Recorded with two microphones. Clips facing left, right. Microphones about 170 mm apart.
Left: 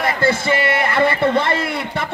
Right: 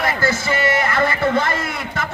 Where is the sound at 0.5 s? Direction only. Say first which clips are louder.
Left 1 dB; 60° left (ahead or behind).